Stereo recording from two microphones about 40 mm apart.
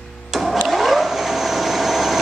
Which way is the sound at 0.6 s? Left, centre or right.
Centre.